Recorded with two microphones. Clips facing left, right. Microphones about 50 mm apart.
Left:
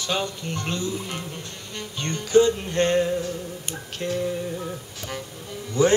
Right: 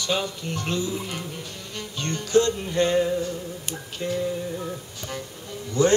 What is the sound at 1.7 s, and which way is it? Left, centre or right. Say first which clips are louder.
Music: even; centre.